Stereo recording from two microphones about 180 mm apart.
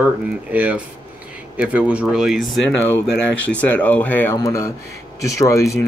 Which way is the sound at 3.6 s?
10° left (ahead or behind).